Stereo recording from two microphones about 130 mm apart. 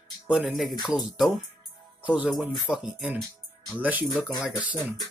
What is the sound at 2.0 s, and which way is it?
Music, 10° right (ahead or behind).